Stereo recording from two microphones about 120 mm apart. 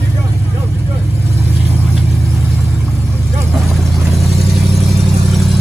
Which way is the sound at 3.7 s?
Centre (ahead or behind).